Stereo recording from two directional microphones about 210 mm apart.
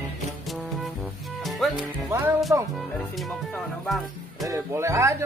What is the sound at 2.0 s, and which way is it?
Speech, 15° right (ahead or behind).